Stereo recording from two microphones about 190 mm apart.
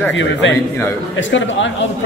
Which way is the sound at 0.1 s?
75° left (ahead or behind).